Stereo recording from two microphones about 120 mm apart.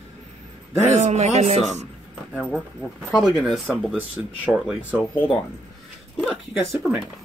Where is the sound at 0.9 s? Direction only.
70° right (ahead or behind).